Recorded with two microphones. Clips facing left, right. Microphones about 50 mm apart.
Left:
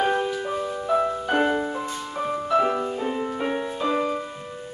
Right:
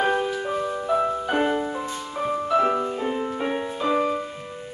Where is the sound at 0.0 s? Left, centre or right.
Centre.